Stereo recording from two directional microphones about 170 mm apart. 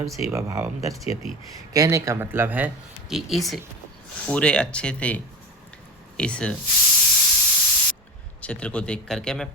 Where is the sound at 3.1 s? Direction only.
Centre (ahead or behind).